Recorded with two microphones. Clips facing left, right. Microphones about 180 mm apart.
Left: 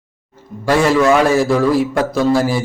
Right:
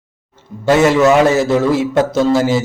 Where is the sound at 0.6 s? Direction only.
25° right (ahead or behind).